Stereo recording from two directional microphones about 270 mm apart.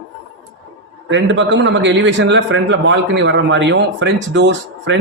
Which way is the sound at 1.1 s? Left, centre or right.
Right.